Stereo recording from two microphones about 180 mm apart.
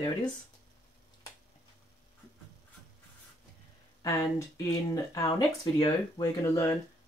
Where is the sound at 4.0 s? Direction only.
15° left (ahead or behind).